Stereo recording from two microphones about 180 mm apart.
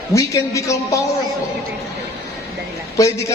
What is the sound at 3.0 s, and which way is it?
Speech, 20° left (ahead or behind).